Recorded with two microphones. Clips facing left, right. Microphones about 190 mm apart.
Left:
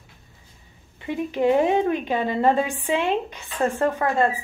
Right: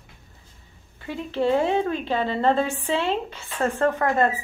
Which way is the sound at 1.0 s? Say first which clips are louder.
Left 2 dB; 15° left (ahead or behind).